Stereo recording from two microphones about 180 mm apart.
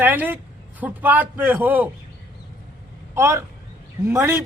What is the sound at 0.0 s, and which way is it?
A man's voice, 10° right (ahead or behind).